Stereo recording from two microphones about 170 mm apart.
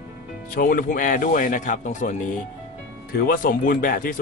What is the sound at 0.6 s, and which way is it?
Speech, 55° left (ahead or behind).